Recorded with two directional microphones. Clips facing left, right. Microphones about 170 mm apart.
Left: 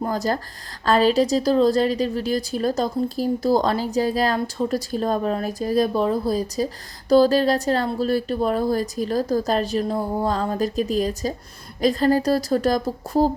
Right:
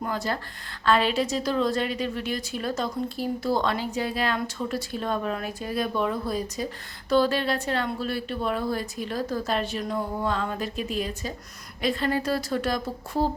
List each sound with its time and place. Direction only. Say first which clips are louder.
0.0 s a woman's voice: left 6 dB; 40° left (ahead or behind)